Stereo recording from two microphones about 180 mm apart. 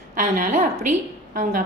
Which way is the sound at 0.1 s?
45° right (ahead or behind).